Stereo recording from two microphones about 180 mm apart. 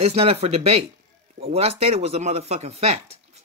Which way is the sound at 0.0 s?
35° right (ahead or behind).